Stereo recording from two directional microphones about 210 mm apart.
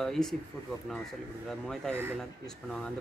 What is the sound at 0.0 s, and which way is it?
Speech, centre (ahead or behind).